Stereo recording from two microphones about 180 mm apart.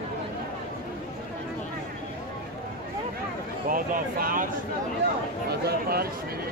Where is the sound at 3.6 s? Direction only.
50° right (ahead or behind).